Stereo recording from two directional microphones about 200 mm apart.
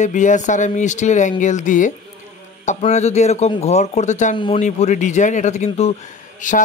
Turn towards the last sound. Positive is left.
turn(degrees=40)  # may be behind; listen again after turning